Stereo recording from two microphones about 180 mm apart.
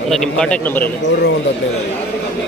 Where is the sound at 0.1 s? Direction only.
5° left (ahead or behind).